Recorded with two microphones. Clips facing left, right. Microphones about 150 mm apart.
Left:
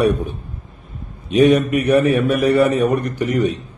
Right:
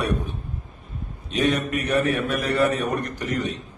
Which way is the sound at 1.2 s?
10° left (ahead or behind).